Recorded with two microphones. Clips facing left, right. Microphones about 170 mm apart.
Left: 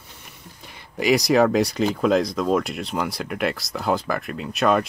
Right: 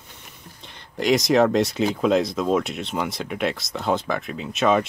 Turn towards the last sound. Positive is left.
turn(degrees=0)  # may be behind; listen again after turning